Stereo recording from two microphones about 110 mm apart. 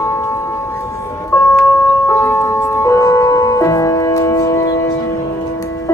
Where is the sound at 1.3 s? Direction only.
30° left (ahead or behind).